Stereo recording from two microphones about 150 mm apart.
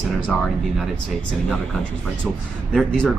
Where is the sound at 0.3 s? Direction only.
10° left (ahead or behind).